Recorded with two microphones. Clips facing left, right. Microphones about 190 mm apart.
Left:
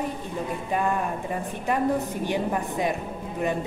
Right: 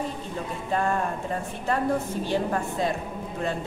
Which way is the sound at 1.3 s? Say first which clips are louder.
Left 1 dB; 15° left (ahead or behind).